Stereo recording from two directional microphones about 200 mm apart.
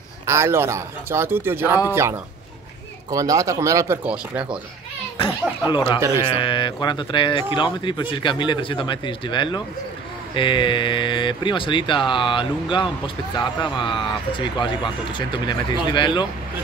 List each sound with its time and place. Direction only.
0.3 s speech: 15° right (ahead or behind)
5.2 s speech: 25° left (ahead or behind)